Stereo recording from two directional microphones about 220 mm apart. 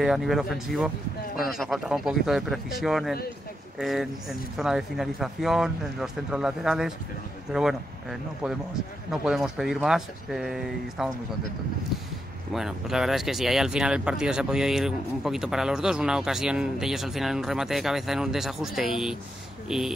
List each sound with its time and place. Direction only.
0.0 s speech: centre (ahead or behind)
12.5 s speech: centre (ahead or behind)